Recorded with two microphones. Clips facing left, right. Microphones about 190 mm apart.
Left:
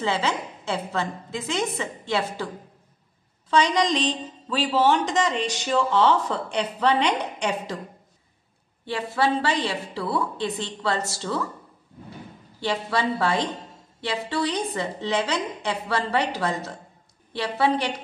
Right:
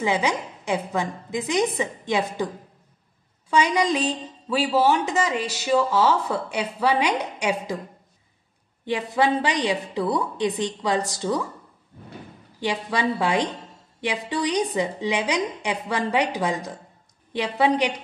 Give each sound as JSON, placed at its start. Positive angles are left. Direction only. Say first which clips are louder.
{"t": 0.0, "sound": "speech", "louder": "right 2 dB", "side_deg": -15}
{"t": 8.8, "sound": "speech", "louder": "right 2 dB", "side_deg": -15}
{"t": 12.5, "sound": "speech", "louder": "even", "side_deg": -15}